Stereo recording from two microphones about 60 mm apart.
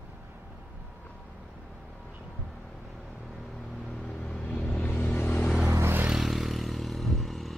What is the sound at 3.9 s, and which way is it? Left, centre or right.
Vehicle, centre.